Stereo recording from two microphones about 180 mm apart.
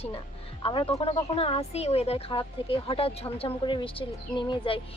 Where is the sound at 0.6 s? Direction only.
30° left (ahead or behind).